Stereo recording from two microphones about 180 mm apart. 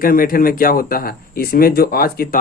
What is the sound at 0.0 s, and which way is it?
Speech, 55° left (ahead or behind).